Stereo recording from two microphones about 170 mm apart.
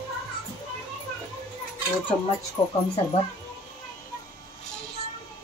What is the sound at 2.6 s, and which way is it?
Speech, 25° left (ahead or behind).